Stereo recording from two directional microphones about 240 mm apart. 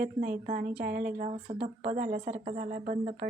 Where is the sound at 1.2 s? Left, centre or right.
Right.